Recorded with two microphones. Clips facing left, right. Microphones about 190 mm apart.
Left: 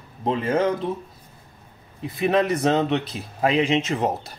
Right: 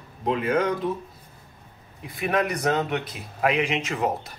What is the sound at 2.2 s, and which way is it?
Speech, 25° left (ahead or behind).